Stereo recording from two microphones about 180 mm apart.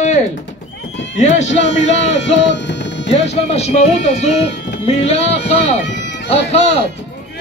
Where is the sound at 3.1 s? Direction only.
35° left (ahead or behind).